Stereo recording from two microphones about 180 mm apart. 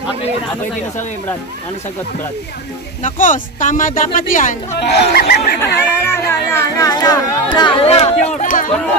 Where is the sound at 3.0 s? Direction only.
45° left (ahead or behind).